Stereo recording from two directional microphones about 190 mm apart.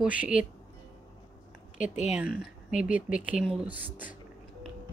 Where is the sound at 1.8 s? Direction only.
40° left (ahead or behind).